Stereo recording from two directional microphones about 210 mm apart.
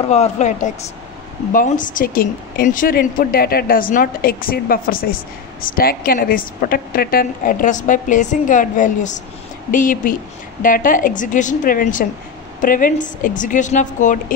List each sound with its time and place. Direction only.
0.1 s a woman's voice: 35° left (ahead or behind)